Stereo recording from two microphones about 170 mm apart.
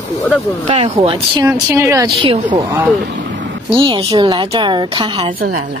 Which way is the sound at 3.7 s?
30° right (ahead or behind).